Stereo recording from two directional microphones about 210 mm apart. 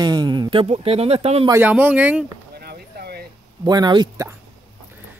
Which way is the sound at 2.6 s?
50° right (ahead or behind).